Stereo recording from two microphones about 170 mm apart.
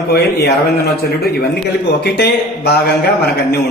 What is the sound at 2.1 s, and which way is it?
Speech, 70° left (ahead or behind).